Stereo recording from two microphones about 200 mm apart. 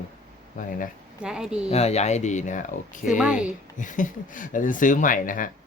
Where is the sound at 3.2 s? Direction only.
5° right (ahead or behind).